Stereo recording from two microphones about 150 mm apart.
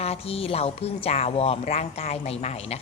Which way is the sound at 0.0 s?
40° left (ahead or behind).